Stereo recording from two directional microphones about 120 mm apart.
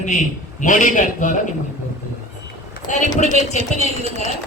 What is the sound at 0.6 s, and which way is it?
Speech, 90° left.